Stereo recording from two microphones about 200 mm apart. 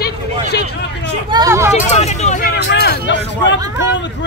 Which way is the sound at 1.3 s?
15° right (ahead or behind).